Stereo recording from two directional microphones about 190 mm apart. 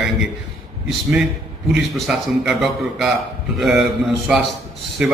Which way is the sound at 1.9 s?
Centre (ahead or behind).